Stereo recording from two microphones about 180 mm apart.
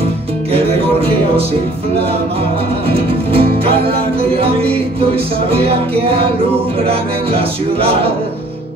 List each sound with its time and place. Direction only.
0.5 s music: 30° right (ahead or behind)
2.9 s music: 30° right (ahead or behind)